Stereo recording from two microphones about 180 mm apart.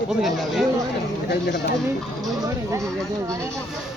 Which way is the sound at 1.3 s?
65° left (ahead or behind).